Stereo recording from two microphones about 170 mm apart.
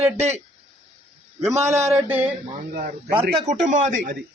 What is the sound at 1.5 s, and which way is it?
Speech, 15° right (ahead or behind).